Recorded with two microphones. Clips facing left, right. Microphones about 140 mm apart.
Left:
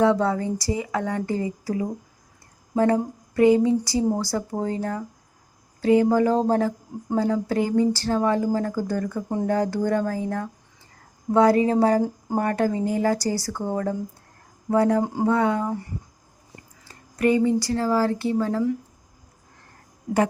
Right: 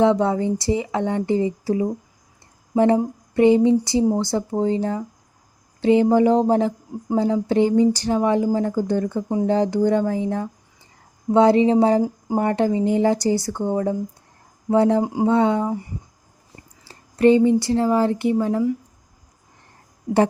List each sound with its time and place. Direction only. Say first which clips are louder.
0.0 s speech: right 3 dB; 20° right (ahead or behind)
15.0 s speech: right 3 dB; 10° right (ahead or behind)
15.3 s speech: right 4 dB; 25° right (ahead or behind)
16.8 s speech: right 6 dB; 30° right (ahead or behind)